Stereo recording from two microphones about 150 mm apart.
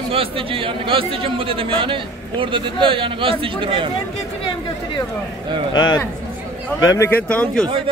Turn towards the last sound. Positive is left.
turn(degrees=10)  # may be behind; listen again after turning